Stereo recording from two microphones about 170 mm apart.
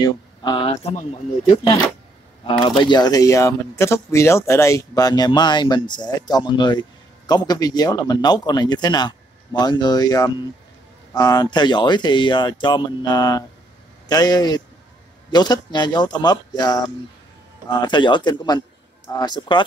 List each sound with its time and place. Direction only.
0.0 s speech: 25° left (ahead or behind)
2.4 s speech: 30° left (ahead or behind)